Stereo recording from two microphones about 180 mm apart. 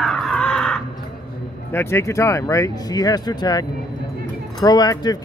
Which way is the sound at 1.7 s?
15° left (ahead or behind).